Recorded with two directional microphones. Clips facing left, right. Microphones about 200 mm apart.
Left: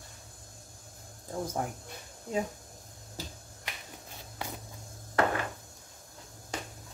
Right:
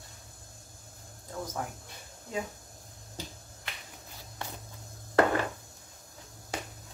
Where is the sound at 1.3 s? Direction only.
30° left (ahead or behind).